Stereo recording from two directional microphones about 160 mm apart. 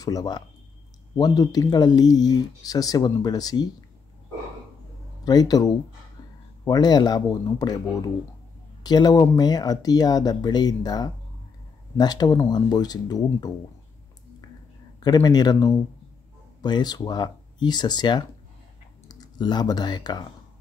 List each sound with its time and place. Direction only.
0.0 s speech: 25° left (ahead or behind)
5.2 s speech: 25° left (ahead or behind)
15.0 s speech: 25° left (ahead or behind)